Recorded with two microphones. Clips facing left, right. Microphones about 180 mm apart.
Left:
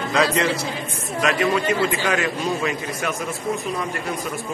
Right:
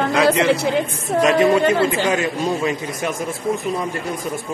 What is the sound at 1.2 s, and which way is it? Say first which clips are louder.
A man's voice: right 5 dB; 20° right (ahead or behind).